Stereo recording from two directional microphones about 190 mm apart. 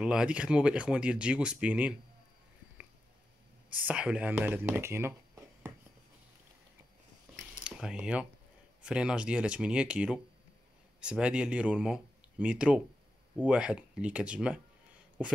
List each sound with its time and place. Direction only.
0.0 s speech: 5° right (ahead or behind)
3.8 s speech: 5° right (ahead or behind)
7.6 s speech: 5° right (ahead or behind)